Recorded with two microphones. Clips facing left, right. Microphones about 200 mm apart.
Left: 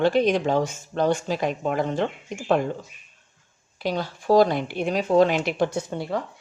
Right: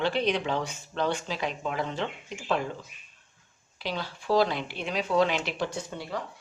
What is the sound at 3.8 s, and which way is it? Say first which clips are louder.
Speech: left 7 dB; 45° left (ahead or behind).